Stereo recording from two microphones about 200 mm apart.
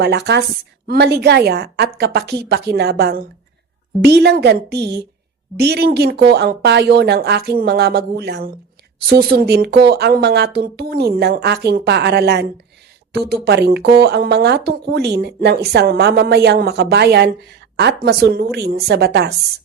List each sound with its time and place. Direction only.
0.0 s speech: 55° right (ahead or behind)